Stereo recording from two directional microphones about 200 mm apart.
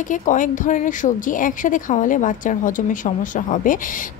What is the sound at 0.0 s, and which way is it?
Speech, 40° left (ahead or behind).